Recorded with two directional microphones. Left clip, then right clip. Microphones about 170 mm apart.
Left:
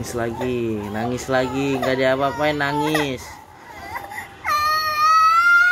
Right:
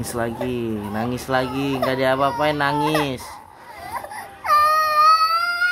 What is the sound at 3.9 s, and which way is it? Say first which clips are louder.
Baby cry: even; 10° right (ahead or behind).